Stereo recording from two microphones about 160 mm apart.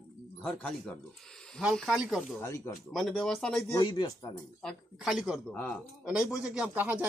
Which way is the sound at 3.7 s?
25° left (ahead or behind).